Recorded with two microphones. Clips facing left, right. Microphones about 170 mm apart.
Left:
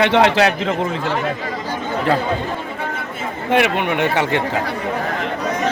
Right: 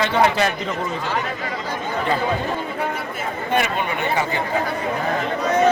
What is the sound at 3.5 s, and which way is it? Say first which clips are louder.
Speech: left 6 dB; 85° left.